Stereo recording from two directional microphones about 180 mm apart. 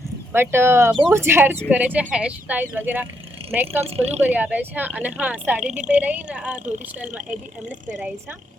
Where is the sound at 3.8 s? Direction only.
35° right (ahead or behind).